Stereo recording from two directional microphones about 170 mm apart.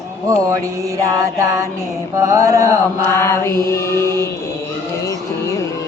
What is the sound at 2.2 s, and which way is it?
Mantra, 20° right (ahead or behind).